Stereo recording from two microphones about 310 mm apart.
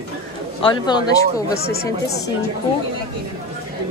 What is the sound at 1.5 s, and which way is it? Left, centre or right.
Speech, left.